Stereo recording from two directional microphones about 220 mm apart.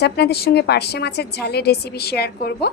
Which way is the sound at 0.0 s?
45° left (ahead or behind).